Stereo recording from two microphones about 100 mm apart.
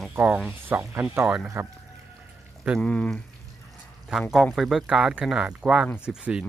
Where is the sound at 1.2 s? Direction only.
10° right (ahead or behind).